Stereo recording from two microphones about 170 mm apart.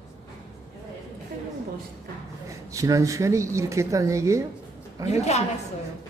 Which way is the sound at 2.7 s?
20° right (ahead or behind).